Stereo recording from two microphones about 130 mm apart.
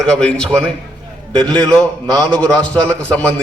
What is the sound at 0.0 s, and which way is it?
A man's voice, 5° left (ahead or behind).